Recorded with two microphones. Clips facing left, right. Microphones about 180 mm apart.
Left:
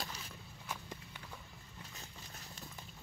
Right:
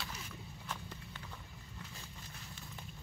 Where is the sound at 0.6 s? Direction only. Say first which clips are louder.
Left 1 dB; 10° left (ahead or behind).